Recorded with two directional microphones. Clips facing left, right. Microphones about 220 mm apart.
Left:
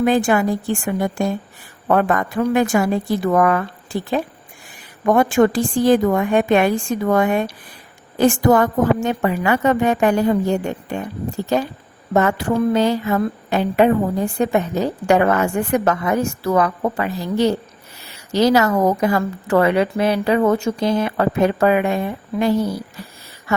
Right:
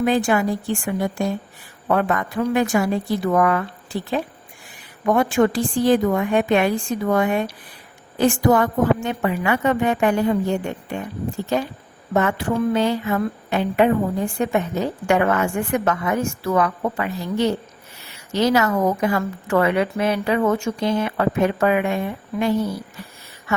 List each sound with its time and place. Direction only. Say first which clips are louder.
0.0 s a woman's voice: left 2 dB; 50° left (ahead or behind)
5.0 s a woman's voice: left 3 dB; 50° left (ahead or behind)
12.1 s a woman's voice: left 3 dB; 40° left (ahead or behind)